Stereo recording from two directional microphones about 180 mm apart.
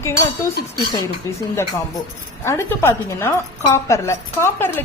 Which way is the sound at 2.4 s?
15° left (ahead or behind).